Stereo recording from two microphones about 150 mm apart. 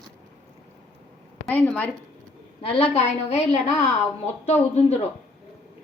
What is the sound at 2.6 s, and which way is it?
A woman's voice, 45° left (ahead or behind).